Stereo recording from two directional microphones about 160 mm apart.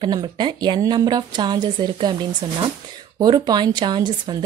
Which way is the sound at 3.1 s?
25° right (ahead or behind).